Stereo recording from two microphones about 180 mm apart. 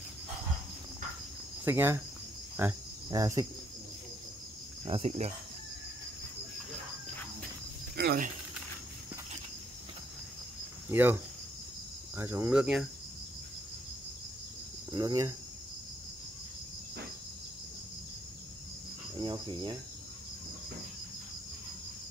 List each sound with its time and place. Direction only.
1.6 s cricket: 10° right (ahead or behind)
2.6 s speech: 10° right (ahead or behind)
3.1 s cricket: 20° right (ahead or behind)
4.8 s speech: 35° right (ahead or behind)
7.9 s a sound: 65° right (ahead or behind)
10.9 s speech: 10° right (ahead or behind)
12.2 s speech: 15° right (ahead or behind)
14.9 s speech: 20° right (ahead or behind)
19.1 s cricket: 25° right (ahead or behind)